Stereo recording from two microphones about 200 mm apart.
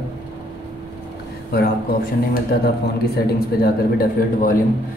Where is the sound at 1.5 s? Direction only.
50° left (ahead or behind).